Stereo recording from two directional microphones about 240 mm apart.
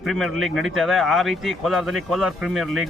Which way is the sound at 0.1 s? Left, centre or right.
Centre.